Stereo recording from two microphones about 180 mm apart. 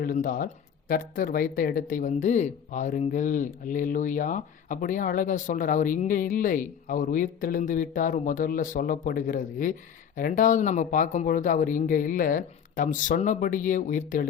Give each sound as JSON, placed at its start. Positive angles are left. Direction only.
{"t": 0.0, "sound": "speech", "side_deg": 50}